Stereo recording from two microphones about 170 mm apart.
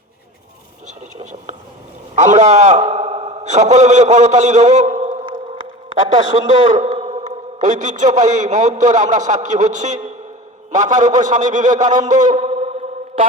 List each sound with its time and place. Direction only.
0.9 s whispering: 45° right (ahead or behind)
2.1 s a man's voice: 45° right (ahead or behind)
2.9 s a sound: 40° right (ahead or behind)
6.5 s a man's voice: 45° right (ahead or behind)